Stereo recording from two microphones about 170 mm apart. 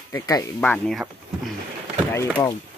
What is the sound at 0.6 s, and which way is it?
Speech, 5° left (ahead or behind).